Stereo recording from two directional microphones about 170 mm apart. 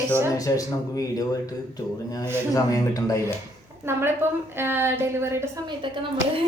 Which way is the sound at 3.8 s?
15° right (ahead or behind).